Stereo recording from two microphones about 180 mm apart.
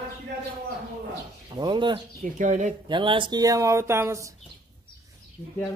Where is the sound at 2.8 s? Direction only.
25° right (ahead or behind).